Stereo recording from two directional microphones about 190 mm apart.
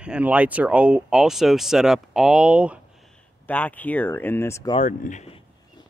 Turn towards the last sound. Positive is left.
turn(degrees=40)  # may be behind; listen again after turning